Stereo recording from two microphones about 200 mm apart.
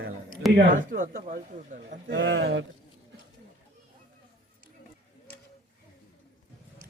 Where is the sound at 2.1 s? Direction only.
65° right (ahead or behind).